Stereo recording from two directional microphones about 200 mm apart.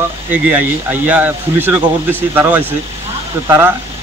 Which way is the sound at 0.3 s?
10° right (ahead or behind).